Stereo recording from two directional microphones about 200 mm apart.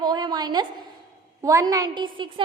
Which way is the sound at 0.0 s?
20° right (ahead or behind).